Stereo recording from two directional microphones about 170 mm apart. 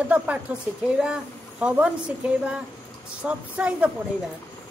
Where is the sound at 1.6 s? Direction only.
10° right (ahead or behind).